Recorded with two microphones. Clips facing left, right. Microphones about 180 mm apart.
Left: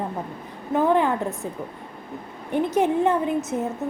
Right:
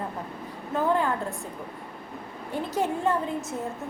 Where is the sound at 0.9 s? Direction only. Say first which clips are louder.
Left 3 dB; 20° left (ahead or behind).